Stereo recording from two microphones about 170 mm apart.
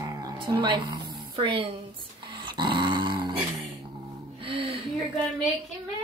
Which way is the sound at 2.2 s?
25° right (ahead or behind).